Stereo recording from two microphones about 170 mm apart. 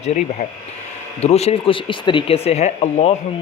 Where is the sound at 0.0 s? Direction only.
40° left (ahead or behind).